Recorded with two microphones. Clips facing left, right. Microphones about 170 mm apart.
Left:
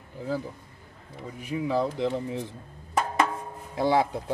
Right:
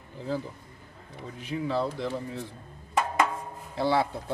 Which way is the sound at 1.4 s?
15° left (ahead or behind).